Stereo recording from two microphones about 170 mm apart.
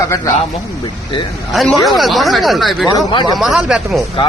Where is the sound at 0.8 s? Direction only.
25° left (ahead or behind).